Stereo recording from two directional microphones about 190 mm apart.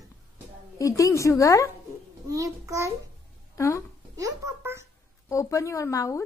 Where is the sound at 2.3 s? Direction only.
15° right (ahead or behind).